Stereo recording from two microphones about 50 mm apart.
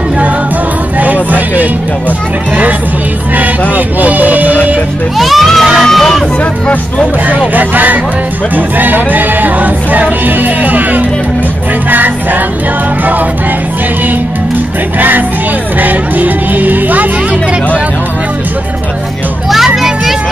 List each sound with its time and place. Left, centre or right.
0.9 s music: right
3.7 s music: right
5.1 s speech: centre
7.2 s music: right
15.0 s music: right
19.5 s children playing: centre